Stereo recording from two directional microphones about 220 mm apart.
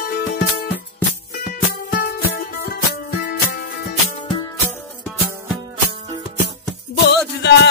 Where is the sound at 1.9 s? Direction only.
40° left (ahead or behind).